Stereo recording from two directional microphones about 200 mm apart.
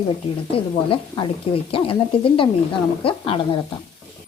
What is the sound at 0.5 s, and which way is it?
A woman's voice, 25° left (ahead or behind).